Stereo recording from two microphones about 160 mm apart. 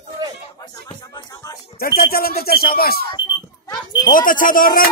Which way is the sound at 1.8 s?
75° left (ahead or behind).